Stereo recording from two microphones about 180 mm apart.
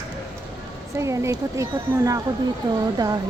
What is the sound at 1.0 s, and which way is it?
Speech, 15° right (ahead or behind).